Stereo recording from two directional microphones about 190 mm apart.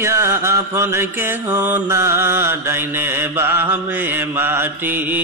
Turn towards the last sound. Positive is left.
turn(degrees=-10)  # may be behind; listen again after turning